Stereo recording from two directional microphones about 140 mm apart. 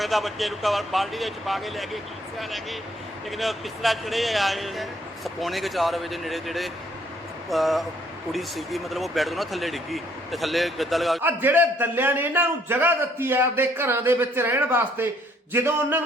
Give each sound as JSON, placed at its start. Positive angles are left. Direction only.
{"t": 0.0, "sound": "a man's voice", "side_deg": 0}
{"t": 3.3, "sound": "a man's voice", "side_deg": 0}
{"t": 11.2, "sound": "a man's voice", "side_deg": -15}